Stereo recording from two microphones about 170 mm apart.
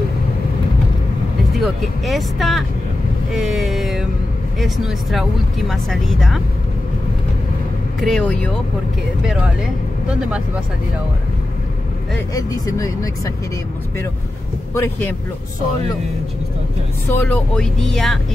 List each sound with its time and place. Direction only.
1.6 s speech: centre (ahead or behind)
3.3 s vehicle: centre (ahead or behind)
4.6 s speech: centre (ahead or behind)
8.0 s speech: 5° left (ahead or behind)
12.4 s speech: 20° left (ahead or behind)
14.7 s speech: 15° left (ahead or behind)
17.1 s speech: 10° left (ahead or behind)